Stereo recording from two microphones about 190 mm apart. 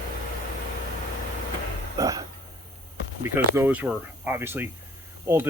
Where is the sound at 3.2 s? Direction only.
15° right (ahead or behind).